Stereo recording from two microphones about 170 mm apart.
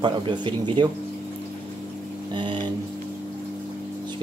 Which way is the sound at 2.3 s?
30° right (ahead or behind).